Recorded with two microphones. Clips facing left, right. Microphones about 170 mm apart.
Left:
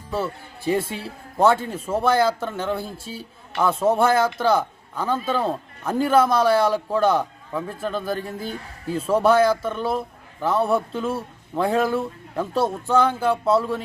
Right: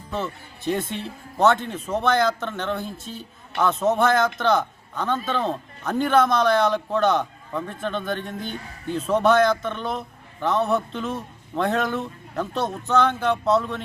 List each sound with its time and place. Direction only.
0.1 s speech: 5° left (ahead or behind)